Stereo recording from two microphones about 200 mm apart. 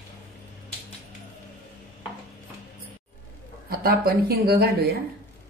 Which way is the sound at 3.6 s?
50° right (ahead or behind).